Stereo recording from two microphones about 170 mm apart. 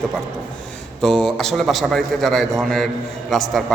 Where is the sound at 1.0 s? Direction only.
5° left (ahead or behind).